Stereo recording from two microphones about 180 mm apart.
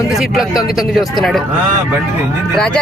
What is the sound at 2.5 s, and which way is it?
Speech, 5° left (ahead or behind).